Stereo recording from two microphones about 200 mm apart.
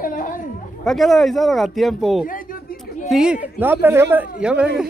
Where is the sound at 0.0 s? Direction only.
45° left (ahead or behind).